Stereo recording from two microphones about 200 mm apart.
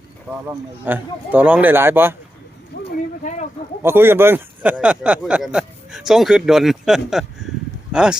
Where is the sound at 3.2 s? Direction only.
35° left (ahead or behind).